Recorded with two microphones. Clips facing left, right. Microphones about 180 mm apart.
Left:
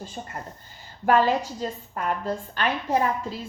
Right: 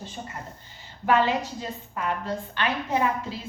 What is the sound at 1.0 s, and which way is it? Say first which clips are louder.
Speech: left 2 dB; 45° left (ahead or behind).